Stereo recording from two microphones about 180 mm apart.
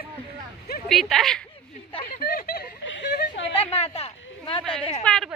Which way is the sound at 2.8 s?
85° left.